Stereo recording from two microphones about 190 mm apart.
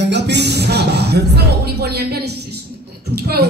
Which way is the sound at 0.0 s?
65° right (ahead or behind).